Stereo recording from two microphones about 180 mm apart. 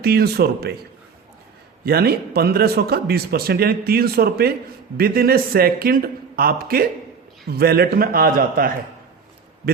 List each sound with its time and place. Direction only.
0.0 s a man's voice: 60° right (ahead or behind)
1.8 s a man's voice: 60° right (ahead or behind)